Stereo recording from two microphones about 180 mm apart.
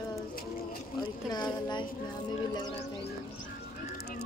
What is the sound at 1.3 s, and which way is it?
Speech, 25° left (ahead or behind).